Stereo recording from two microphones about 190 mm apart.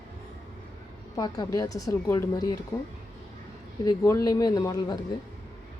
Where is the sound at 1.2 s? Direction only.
20° left (ahead or behind).